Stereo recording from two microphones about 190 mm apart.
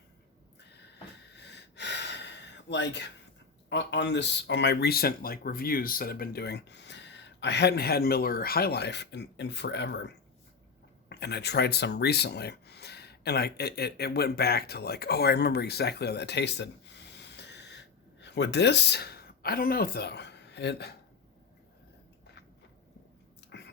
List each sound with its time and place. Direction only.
1.4 s gasp: 65° left (ahead or behind)
3.7 s speech: 65° left (ahead or behind)
23.5 s a sound: 65° left (ahead or behind)